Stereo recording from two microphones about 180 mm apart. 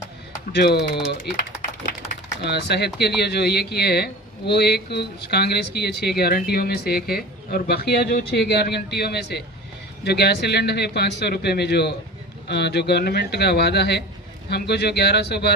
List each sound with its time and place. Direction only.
0.5 s speech: 65° left (ahead or behind)
2.4 s speech: 65° left (ahead or behind)